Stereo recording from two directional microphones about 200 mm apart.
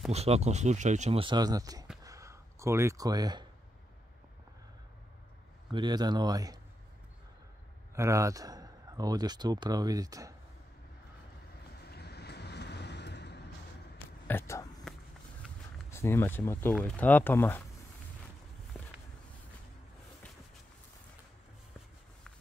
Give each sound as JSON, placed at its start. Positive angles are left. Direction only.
{"t": 0.1, "sound": "speech", "side_deg": -30}
{"t": 2.0, "sound": "a sound", "side_deg": -15}
{"t": 5.7, "sound": "speech", "side_deg": -20}
{"t": 7.9, "sound": "speech", "side_deg": -15}
{"t": 11.9, "sound": "vehicle", "side_deg": 55}
{"t": 14.2, "sound": "a sound", "side_deg": 10}
{"t": 15.9, "sound": "speech", "side_deg": 10}